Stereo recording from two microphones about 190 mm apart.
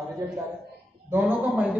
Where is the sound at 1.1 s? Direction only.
10° right (ahead or behind).